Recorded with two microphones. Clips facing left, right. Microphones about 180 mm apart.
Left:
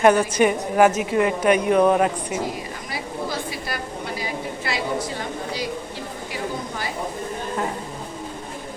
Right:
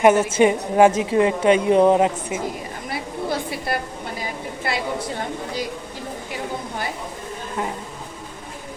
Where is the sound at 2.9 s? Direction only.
55° right (ahead or behind).